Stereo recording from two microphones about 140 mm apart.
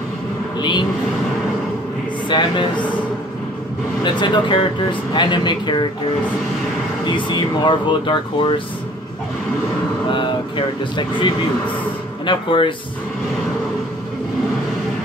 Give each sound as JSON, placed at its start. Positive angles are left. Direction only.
{"t": 0.6, "sound": "speech", "side_deg": 30}
{"t": 2.2, "sound": "speech", "side_deg": 35}
{"t": 4.0, "sound": "speech", "side_deg": 35}
{"t": 7.1, "sound": "speech", "side_deg": 35}
{"t": 11.0, "sound": "speech", "side_deg": 35}